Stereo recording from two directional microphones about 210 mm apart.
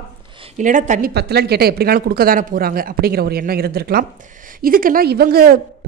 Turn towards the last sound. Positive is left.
turn(degrees=-45)  # may be behind; listen again after turning